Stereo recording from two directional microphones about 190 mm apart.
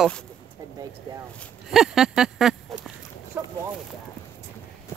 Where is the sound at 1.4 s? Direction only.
Centre (ahead or behind).